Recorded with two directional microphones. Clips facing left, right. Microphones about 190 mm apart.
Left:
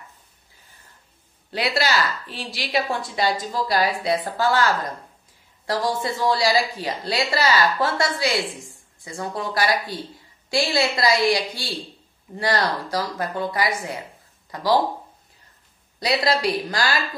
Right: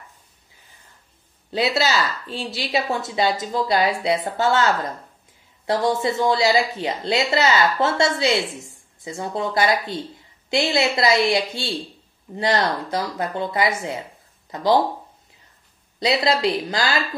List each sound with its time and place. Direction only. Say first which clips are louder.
1.5 s a woman's voice: right 2 dB; 25° right (ahead or behind)
16.0 s a woman's voice: right 2 dB; 25° right (ahead or behind)